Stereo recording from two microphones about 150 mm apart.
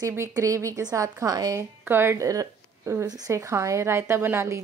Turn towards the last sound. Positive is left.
turn(degrees=-15)  # may be behind; listen again after turning